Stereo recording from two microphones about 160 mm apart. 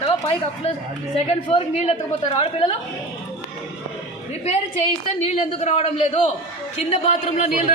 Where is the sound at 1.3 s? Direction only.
35° left (ahead or behind).